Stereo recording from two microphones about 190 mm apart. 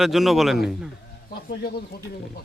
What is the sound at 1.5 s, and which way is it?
Speech, 55° left (ahead or behind).